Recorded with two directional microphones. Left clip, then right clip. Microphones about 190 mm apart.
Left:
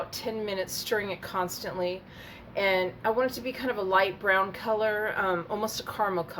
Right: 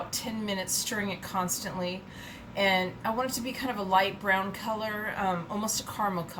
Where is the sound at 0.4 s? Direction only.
40° left (ahead or behind).